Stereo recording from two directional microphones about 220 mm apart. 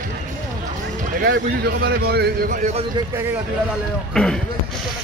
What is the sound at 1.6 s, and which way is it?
A man's voice, 45° right (ahead or behind).